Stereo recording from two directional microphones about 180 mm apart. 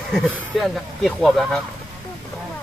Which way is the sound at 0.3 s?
Centre (ahead or behind).